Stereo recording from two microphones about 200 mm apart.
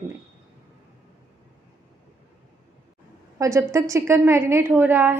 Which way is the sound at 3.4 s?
15° right (ahead or behind).